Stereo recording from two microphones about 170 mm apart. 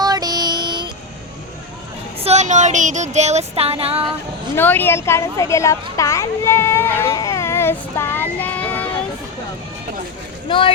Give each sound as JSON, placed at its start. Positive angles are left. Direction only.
{"t": 0.0, "sound": "child singing", "side_deg": -20}
{"t": 2.2, "sound": "a sound", "side_deg": -40}
{"t": 4.5, "sound": "speech", "side_deg": 10}